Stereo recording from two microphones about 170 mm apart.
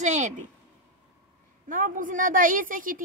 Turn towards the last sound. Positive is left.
turn(degrees=-55)  # may be behind; listen again after turning